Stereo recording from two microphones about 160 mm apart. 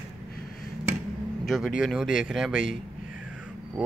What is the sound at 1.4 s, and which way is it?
Speech, centre (ahead or behind).